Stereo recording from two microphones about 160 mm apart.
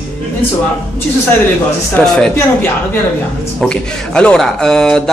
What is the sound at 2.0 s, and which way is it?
Speech, 10° left (ahead or behind).